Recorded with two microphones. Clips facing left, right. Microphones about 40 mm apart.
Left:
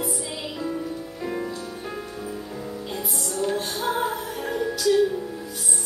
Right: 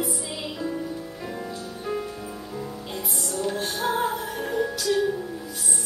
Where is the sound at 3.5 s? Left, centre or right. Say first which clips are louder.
Even; centre.